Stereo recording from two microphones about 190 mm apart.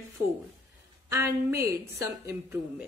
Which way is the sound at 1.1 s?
10° right (ahead or behind).